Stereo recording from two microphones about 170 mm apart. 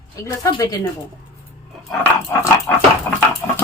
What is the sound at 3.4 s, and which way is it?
Speech, 10° left (ahead or behind).